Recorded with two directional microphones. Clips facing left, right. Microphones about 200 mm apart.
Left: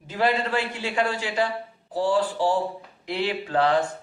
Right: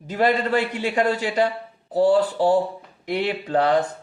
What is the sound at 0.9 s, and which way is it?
Speech, 40° right (ahead or behind).